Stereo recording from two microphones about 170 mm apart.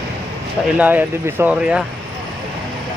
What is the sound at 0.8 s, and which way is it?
Speech, 10° right (ahead or behind).